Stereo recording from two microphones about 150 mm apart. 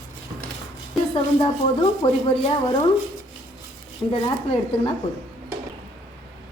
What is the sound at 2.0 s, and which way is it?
Speech, 40° left (ahead or behind).